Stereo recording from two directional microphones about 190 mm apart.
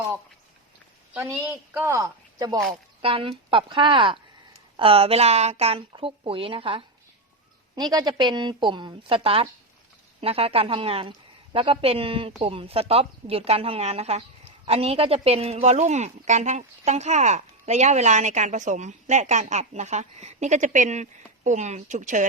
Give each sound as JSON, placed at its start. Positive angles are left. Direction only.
{"t": 1.1, "sound": "speech", "side_deg": -10}
{"t": 3.0, "sound": "a woman's voice", "side_deg": -30}